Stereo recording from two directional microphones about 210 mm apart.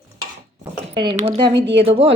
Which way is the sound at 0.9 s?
25° right (ahead or behind).